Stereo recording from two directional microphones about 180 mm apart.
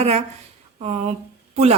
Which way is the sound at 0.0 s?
35° right (ahead or behind).